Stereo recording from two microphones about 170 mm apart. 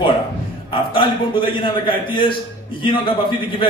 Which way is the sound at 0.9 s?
30° left (ahead or behind).